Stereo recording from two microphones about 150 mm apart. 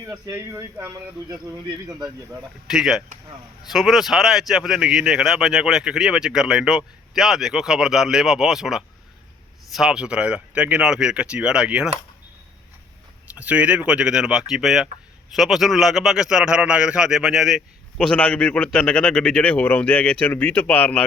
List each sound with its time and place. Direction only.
0.0 s speech: 20° right (ahead or behind)
2.6 s speech: 5° right (ahead or behind)
13.3 s speech: 10° right (ahead or behind); by 21.0 s 10° left (ahead or behind)